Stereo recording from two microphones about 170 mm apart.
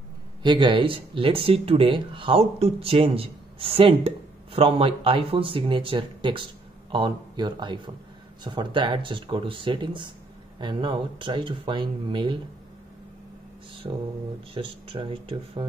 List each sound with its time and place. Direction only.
0.4 s speech: 30° right (ahead or behind)
13.9 s speech: 30° right (ahead or behind)